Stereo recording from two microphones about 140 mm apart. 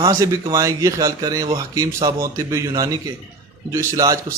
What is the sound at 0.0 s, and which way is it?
Speech, 25° right (ahead or behind).